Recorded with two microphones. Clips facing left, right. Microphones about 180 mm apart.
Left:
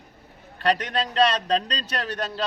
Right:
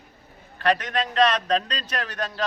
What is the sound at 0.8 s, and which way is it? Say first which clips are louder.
Speech: even; 30° left (ahead or behind).